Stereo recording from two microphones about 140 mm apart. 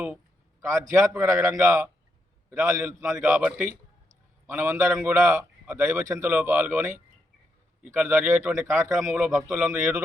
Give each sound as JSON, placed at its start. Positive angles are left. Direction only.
{"t": 0.6, "sound": "a man's voice", "side_deg": -20}
{"t": 4.4, "sound": "a man's voice", "side_deg": -15}
{"t": 9.0, "sound": "a man's voice", "side_deg": -5}